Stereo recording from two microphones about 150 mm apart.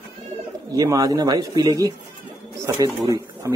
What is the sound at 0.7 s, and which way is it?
A man's voice, 25° right (ahead or behind).